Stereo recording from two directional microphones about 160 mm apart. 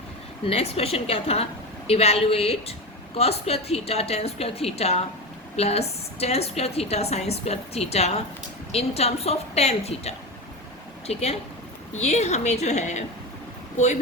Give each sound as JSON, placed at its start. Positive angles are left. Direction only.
{"t": 0.4, "sound": "a woman's voice", "side_deg": 40}